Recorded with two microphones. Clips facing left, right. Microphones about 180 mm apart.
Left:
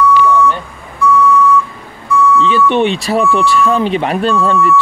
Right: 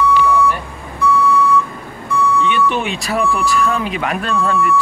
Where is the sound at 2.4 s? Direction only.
30° left (ahead or behind).